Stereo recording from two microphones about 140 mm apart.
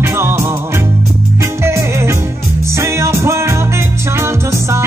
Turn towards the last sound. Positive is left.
turn(degrees=-20)  # may be behind; listen again after turning